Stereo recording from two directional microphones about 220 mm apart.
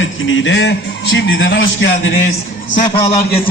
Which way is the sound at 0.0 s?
60° left (ahead or behind).